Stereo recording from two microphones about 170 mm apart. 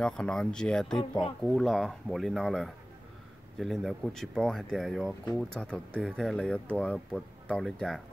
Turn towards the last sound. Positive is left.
turn(degrees=0)  # may be behind; listen again after turning